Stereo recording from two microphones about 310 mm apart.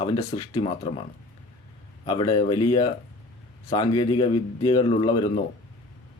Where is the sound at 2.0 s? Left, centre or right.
Centre.